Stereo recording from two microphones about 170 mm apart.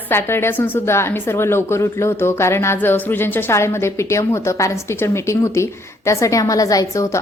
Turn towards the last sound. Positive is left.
turn(degrees=20)  # may be behind; listen again after turning